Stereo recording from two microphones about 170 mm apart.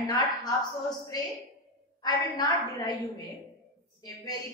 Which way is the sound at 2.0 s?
25° left (ahead or behind).